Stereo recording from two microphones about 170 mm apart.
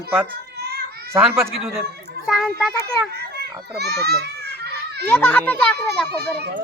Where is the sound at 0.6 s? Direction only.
70° right (ahead or behind).